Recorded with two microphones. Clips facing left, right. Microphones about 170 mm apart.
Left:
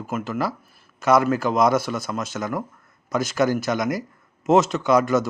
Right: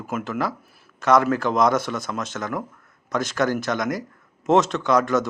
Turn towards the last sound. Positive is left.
turn(degrees=5)  # may be behind; listen again after turning